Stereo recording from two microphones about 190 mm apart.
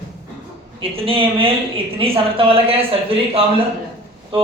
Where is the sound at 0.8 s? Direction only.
30° right (ahead or behind).